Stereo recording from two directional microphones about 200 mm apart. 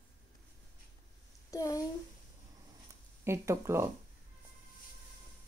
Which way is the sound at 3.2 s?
15° right (ahead or behind).